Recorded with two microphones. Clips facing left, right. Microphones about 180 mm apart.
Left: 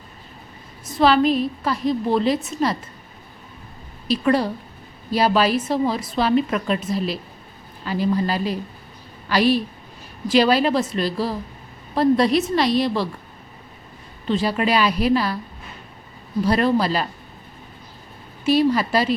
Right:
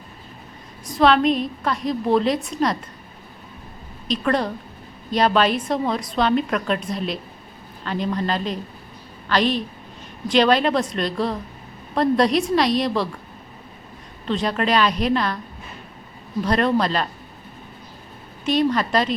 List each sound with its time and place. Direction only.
0.9 s a woman's voice: 5° left (ahead or behind)
4.1 s a woman's voice: 5° left (ahead or behind)
14.3 s a woman's voice: 5° left (ahead or behind)
16.4 s a woman's voice: 5° left (ahead or behind)
18.4 s a woman's voice: 5° left (ahead or behind)